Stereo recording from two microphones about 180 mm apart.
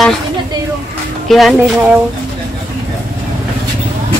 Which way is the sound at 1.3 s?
Centre (ahead or behind).